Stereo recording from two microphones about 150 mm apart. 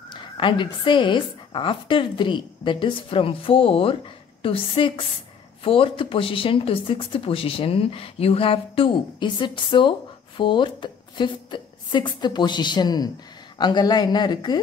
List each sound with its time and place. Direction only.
0.1 s speech: 35° left (ahead or behind)